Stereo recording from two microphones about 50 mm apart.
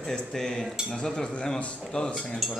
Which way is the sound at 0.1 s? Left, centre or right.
Centre.